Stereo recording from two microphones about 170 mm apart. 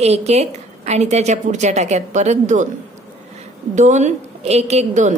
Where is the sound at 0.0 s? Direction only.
40° right (ahead or behind).